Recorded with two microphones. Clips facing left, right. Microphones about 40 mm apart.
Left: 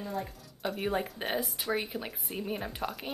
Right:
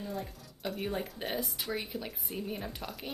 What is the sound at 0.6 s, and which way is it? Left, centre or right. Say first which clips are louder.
Speech: left 2 dB; centre.